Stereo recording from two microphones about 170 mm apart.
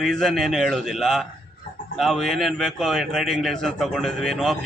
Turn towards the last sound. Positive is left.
turn(degrees=0)  # may be behind; listen again after turning